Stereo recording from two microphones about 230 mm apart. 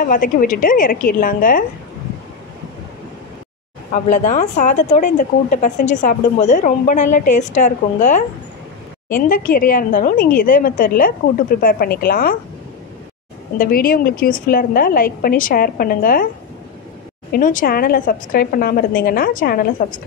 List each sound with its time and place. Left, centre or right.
0.1 s a woman's voice: left
3.9 s a woman's voice: left
13.6 s a woman's voice: left
17.3 s a woman's voice: left